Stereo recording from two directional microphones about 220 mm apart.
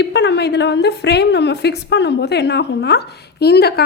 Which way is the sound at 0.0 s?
50° left (ahead or behind).